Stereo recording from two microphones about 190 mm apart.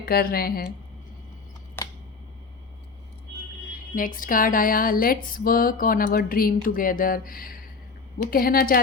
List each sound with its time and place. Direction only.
0.0 s speech: 50° left (ahead or behind)
1.8 s a sound: 10° left (ahead or behind)
3.9 s speech: 45° left (ahead or behind)